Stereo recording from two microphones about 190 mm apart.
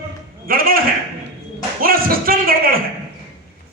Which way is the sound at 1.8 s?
50° right (ahead or behind).